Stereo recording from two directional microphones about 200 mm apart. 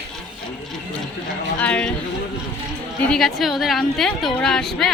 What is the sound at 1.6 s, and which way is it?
Speech, 5° left (ahead or behind).